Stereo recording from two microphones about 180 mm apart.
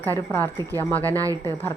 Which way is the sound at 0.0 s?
10° left (ahead or behind).